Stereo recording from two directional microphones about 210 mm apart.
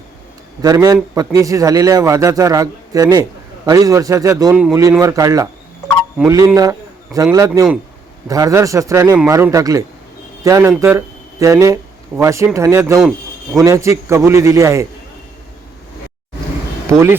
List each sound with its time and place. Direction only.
0.6 s a man's voice: 15° right (ahead or behind)
4.5 s speech: 5° right (ahead or behind)
4.8 s a man's voice: 15° right (ahead or behind)
13.0 s a sound: centre (ahead or behind)
13.6 s a man's voice: 15° right (ahead or behind)